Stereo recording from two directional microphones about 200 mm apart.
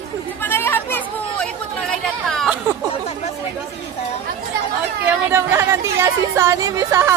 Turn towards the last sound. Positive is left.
turn(degrees=-15)  # may be behind; listen again after turning